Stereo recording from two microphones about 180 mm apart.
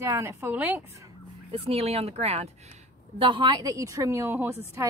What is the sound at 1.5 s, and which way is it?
Speech, 35° right (ahead or behind).